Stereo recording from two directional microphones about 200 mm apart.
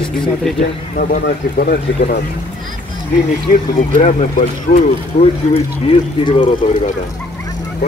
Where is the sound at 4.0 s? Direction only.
40° left (ahead or behind).